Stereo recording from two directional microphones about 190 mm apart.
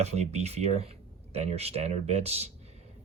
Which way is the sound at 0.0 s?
35° right (ahead or behind).